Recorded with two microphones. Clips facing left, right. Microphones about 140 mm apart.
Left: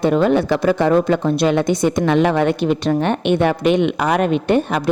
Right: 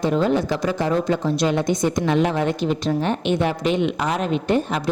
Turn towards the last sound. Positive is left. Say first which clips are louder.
# left 4 dB
turn(degrees=60)  # may be behind; listen again after turning